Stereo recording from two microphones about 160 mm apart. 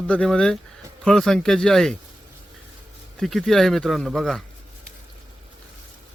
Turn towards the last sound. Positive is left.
turn(degrees=0)  # may be behind; listen again after turning